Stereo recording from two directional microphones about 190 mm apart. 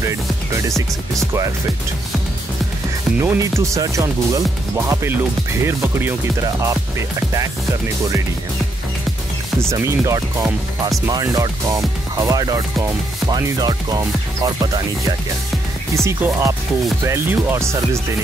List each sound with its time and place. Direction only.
0.0 s speech: 15° right (ahead or behind)
3.2 s speech: 15° right (ahead or behind)
9.6 s speech: 15° right (ahead or behind)
15.9 s speech: 15° right (ahead or behind)